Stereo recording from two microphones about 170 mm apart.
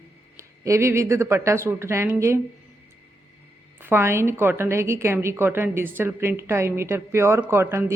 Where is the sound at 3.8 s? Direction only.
15° right (ahead or behind).